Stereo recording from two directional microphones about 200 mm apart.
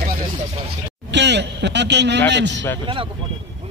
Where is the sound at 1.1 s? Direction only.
60° right (ahead or behind).